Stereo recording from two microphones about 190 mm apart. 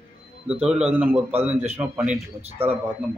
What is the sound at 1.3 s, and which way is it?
Speech, 35° right (ahead or behind).